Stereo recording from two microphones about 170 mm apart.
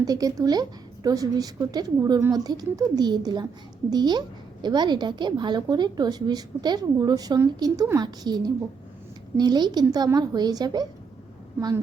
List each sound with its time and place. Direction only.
0.0 s a woman's voice: 20° right (ahead or behind)